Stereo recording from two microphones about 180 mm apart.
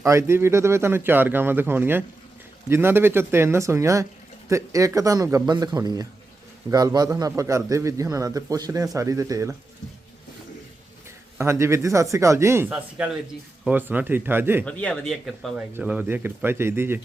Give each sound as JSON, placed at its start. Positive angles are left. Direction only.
{"t": 0.0, "sound": "a man's voice", "side_deg": -15}
{"t": 11.3, "sound": "a man's voice", "side_deg": -15}
{"t": 14.6, "sound": "a man's voice", "side_deg": 5}